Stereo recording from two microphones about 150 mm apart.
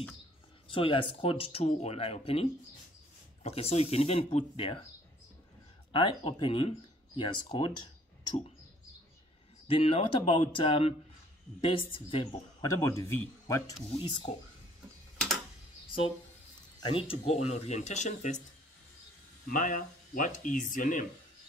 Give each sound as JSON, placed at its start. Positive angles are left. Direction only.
{"t": 0.7, "sound": "speech", "side_deg": 35}
{"t": 5.9, "sound": "speech", "side_deg": 35}
{"t": 9.7, "sound": "speech", "side_deg": 45}
{"t": 12.8, "sound": "speech", "side_deg": 20}
{"t": 13.9, "sound": "speech", "side_deg": 35}
{"t": 16.8, "sound": "speech", "side_deg": 40}
{"t": 19.4, "sound": "speech", "side_deg": 60}